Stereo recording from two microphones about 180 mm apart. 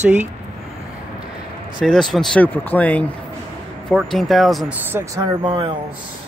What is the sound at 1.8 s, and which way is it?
Speech, centre (ahead or behind).